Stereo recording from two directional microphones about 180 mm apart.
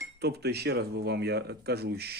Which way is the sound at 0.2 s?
65° right (ahead or behind).